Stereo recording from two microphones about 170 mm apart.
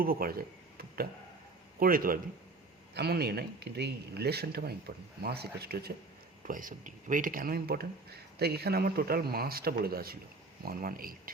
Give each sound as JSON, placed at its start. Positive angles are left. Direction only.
{"t": 0.0, "sound": "speech", "side_deg": -60}
{"t": 2.9, "sound": "speech", "side_deg": -70}
{"t": 6.5, "sound": "speech", "side_deg": -50}